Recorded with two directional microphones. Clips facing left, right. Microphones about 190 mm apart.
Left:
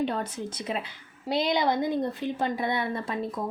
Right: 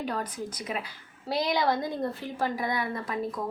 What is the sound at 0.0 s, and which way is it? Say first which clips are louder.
A woman's voice: left 3 dB; 25° left (ahead or behind).